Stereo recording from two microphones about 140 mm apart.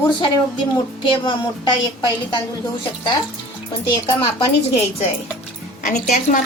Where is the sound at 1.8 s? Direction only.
30° left (ahead or behind).